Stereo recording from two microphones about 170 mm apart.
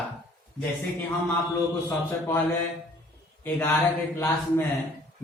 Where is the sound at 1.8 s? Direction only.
10° left (ahead or behind).